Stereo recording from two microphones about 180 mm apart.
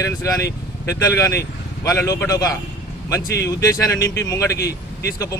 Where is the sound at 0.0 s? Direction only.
20° left (ahead or behind).